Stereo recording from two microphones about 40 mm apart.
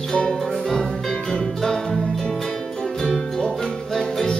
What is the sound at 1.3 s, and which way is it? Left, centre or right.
Music, centre.